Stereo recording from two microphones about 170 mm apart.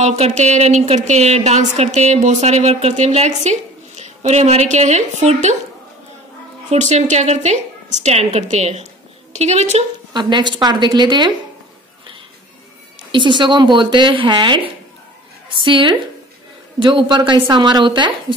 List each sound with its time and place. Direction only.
0.0 s a woman's voice: 45° right (ahead or behind)
6.7 s a woman's voice: 40° right (ahead or behind)
10.1 s speech: 25° right (ahead or behind)
13.1 s speech: 30° right (ahead or behind)